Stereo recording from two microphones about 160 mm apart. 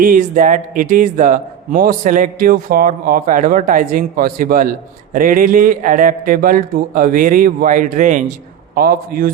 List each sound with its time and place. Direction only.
0.0 s a man's voice: 55° right (ahead or behind)
8.7 s a man's voice: 65° right (ahead or behind)